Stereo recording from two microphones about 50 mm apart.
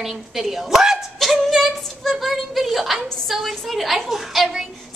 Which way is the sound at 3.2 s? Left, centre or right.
Centre.